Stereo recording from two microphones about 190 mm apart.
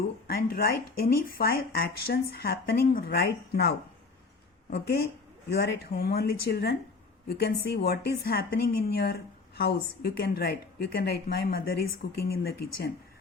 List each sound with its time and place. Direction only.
0.3 s a woman's voice: 50° left (ahead or behind)